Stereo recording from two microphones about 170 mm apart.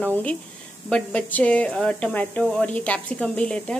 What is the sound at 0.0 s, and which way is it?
A woman's voice, 10° left (ahead or behind).